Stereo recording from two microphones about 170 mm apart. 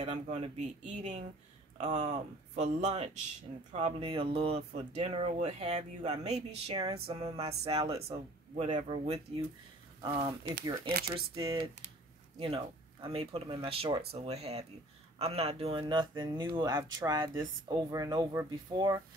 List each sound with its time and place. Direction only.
0.0 s speech: 40° right (ahead or behind)
10.9 s speech: 65° right (ahead or behind)
11.3 s speech: 35° right (ahead or behind)